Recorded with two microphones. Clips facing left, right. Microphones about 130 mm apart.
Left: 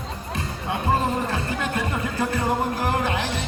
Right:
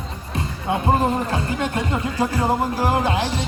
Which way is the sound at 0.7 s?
30° right (ahead or behind).